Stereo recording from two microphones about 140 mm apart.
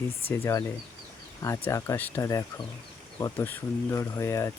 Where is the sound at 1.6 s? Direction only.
15° left (ahead or behind).